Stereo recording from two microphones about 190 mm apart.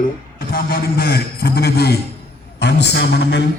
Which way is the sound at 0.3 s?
50° left (ahead or behind).